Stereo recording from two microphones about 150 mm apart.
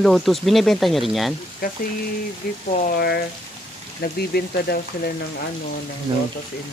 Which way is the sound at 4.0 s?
90° left.